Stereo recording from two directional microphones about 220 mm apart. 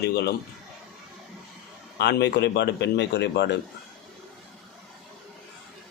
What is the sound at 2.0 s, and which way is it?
Speech, 50° left (ahead or behind).